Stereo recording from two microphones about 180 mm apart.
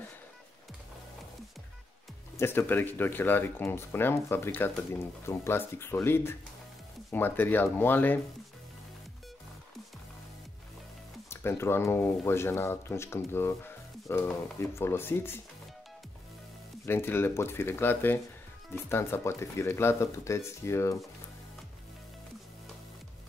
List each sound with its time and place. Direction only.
2.3 s speech: 15° left (ahead or behind)
11.2 s speech: 15° left (ahead or behind)
16.8 s speech: 10° left (ahead or behind)